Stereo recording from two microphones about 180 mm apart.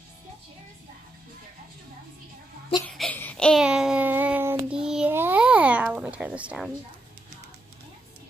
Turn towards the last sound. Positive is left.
turn(degrees=-5)  # may be behind; listen again after turning